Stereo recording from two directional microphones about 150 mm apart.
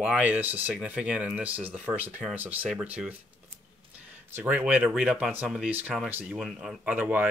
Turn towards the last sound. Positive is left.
turn(degrees=-10)  # may be behind; listen again after turning